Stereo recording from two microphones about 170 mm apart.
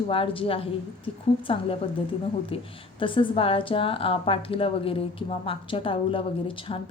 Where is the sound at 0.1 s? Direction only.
35° left (ahead or behind).